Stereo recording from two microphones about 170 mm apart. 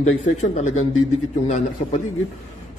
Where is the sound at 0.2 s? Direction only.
45° left (ahead or behind).